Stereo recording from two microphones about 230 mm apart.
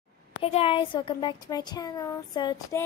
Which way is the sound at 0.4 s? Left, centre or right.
Left.